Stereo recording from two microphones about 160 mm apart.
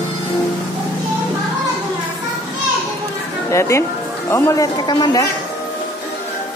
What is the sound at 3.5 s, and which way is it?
A woman's voice, 15° left (ahead or behind).